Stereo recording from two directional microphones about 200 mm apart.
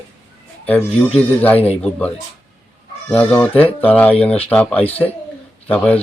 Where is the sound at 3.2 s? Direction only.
5° left (ahead or behind).